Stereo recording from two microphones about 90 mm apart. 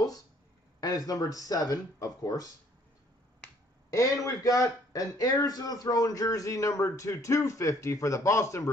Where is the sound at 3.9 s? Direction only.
35° left (ahead or behind).